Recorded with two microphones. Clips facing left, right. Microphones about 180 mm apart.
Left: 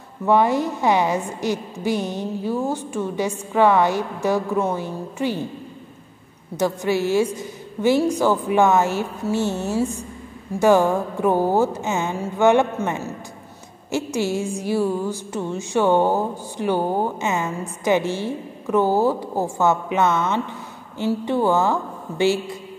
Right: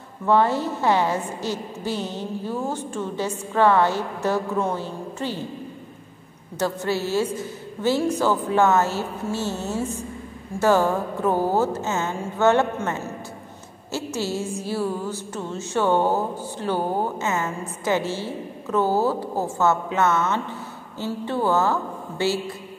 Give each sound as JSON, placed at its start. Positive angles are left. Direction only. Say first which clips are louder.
{"t": 0.2, "sound": "speech", "louder": "left 2 dB", "side_deg": 15}
{"t": 6.6, "sound": "speech", "louder": "left 3 dB", "side_deg": 15}